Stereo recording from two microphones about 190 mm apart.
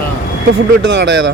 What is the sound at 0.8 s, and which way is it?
Speech, 65° right (ahead or behind).